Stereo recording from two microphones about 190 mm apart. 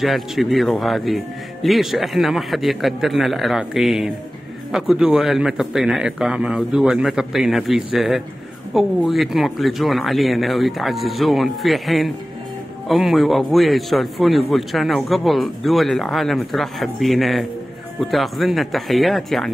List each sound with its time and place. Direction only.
0.0 s speech: centre (ahead or behind)